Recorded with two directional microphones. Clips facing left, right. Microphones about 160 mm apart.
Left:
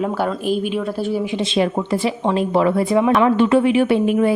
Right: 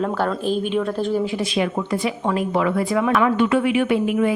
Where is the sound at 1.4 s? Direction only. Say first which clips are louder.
Left 3 dB; 30° left (ahead or behind).